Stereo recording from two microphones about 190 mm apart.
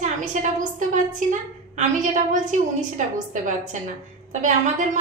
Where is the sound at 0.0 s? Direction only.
40° right (ahead or behind).